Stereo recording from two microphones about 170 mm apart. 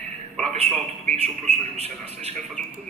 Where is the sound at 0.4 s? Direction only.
40° right (ahead or behind).